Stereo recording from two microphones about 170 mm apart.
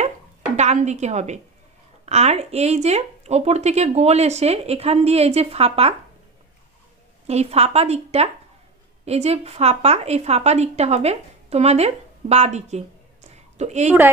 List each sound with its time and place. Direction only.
0.6 s speech: 40° right (ahead or behind)
7.2 s speech: 40° right (ahead or behind)